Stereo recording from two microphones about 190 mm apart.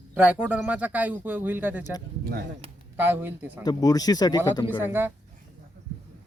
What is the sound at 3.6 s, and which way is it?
Speech, 20° left (ahead or behind).